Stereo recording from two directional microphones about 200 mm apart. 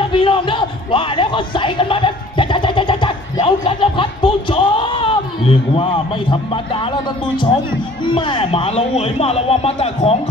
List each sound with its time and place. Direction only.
0.1 s speech: 25° left (ahead or behind)
8.1 s a man's voice: 25° left (ahead or behind)